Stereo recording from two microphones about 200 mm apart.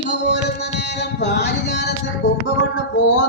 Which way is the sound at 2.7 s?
75° left (ahead or behind).